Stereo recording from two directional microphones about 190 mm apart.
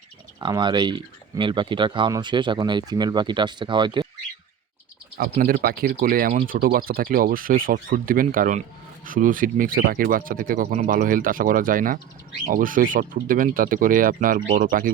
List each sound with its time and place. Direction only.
0.3 s speech: 20° right (ahead or behind)
5.1 s speech: 50° right (ahead or behind)